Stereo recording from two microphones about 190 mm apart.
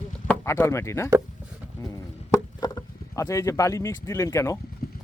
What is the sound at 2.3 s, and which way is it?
Speech, 15° left (ahead or behind).